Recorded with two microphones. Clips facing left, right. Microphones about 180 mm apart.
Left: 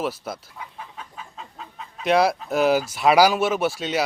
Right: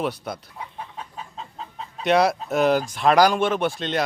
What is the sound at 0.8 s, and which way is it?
Chicken, 30° right (ahead or behind).